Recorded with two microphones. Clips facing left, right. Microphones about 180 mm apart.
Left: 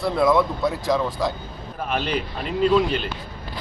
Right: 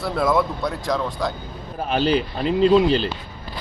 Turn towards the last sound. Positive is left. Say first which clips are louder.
# right 4 dB
turn(degrees=-30)  # may be behind; listen again after turning